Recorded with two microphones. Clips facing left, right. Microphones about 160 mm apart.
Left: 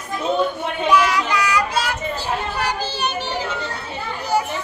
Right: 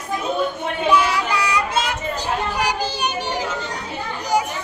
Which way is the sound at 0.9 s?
30° right (ahead or behind).